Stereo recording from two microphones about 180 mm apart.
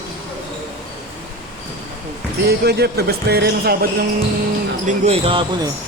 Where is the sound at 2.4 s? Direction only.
65° right (ahead or behind).